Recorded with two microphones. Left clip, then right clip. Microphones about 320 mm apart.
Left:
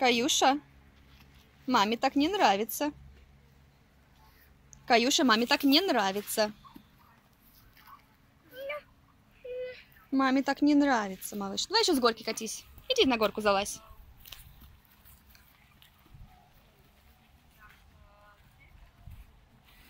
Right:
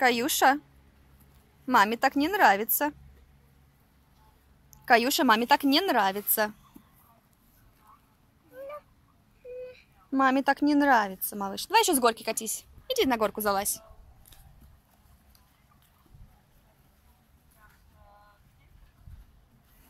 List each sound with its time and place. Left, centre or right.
0.0 s speech: centre
1.7 s speech: centre
4.6 s speech: centre
9.7 s speech: centre